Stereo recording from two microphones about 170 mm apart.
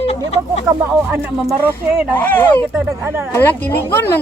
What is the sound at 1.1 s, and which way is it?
Speech, 10° right (ahead or behind).